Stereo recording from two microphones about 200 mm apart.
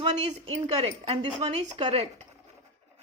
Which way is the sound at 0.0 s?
25° right (ahead or behind).